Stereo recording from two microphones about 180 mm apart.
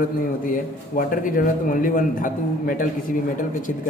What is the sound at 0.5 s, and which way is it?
A man's voice, 50° left (ahead or behind).